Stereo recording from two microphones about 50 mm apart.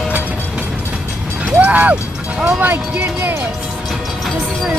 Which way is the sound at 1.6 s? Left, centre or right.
Right.